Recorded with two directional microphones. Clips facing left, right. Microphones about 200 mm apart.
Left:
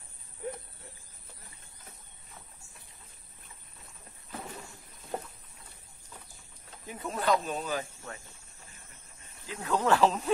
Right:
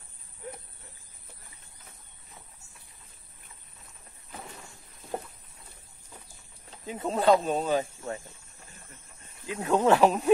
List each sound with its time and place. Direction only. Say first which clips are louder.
6.9 s speech: right 6 dB; 25° right (ahead or behind)
9.5 s speech: right 5 dB; 20° right (ahead or behind)